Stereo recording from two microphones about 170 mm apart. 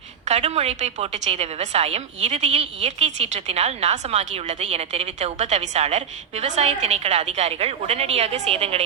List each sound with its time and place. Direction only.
0.3 s a woman's voice: 40° right (ahead or behind)